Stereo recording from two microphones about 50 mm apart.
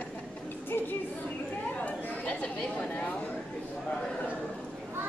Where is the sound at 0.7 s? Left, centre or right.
Left.